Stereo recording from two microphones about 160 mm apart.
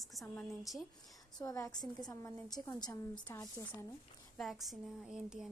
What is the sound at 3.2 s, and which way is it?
Speech, 15° left (ahead or behind).